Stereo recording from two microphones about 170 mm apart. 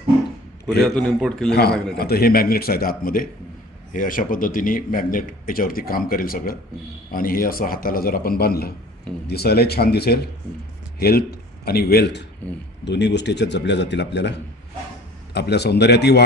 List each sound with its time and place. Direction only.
0.9 s a man's voice: 5° left (ahead or behind)
2.0 s a man's voice: 65° left (ahead or behind)
12.8 s a man's voice: 90° left
15.3 s speech: 75° left (ahead or behind)